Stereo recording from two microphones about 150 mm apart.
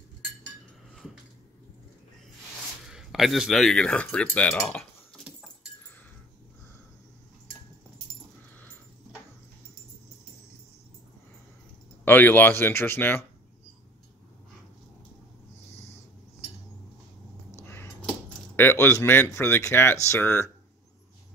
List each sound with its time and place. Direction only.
2.9 s speech: centre (ahead or behind)
12.0 s speech: 10° left (ahead or behind)
17.6 s a sound: 15° left (ahead or behind)
18.6 s speech: 15° left (ahead or behind)